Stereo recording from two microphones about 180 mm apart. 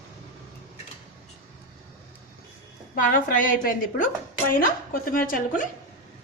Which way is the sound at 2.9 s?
50° left (ahead or behind).